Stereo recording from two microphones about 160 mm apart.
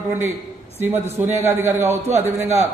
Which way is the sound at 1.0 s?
15° right (ahead or behind).